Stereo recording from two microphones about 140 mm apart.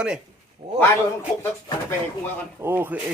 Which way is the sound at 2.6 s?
15° right (ahead or behind).